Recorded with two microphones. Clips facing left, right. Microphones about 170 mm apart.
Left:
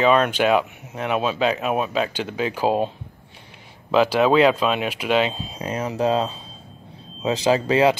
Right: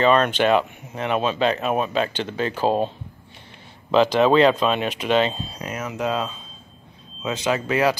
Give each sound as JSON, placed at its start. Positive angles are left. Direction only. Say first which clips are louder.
{"t": 0.0, "sound": "speech", "louder": "even", "side_deg": 10}
{"t": 3.9, "sound": "speech", "louder": "right 1 dB", "side_deg": 10}
{"t": 5.5, "sound": "speech", "louder": "left 4 dB", "side_deg": 30}